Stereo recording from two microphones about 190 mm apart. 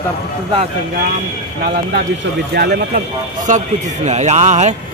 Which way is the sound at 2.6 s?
55° right (ahead or behind).